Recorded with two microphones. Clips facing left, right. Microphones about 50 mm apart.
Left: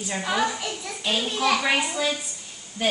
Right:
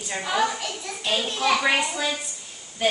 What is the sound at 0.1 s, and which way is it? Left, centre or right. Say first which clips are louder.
Speech: right 1 dB; centre.